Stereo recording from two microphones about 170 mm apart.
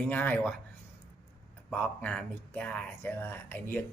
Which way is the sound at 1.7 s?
5° left (ahead or behind).